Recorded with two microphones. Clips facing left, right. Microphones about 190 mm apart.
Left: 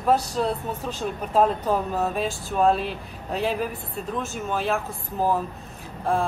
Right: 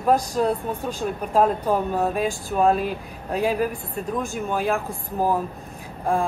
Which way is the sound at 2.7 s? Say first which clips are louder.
Right 3 dB; 50° right (ahead or behind).